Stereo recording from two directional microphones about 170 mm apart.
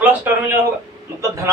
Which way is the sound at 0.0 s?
15° right (ahead or behind).